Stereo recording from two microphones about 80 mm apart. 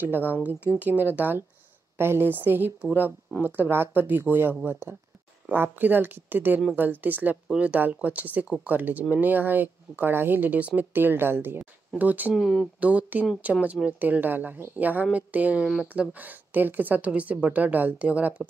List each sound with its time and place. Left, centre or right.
0.0 s a woman's voice: right
12.4 s speech: centre
12.8 s a woman's voice: centre